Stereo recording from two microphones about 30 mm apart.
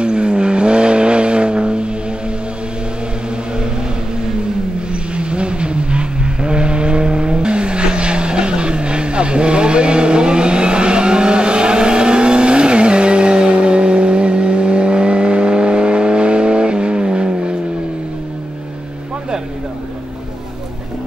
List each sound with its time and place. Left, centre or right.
0.0 s vehicle: right
5.1 s vehicle: right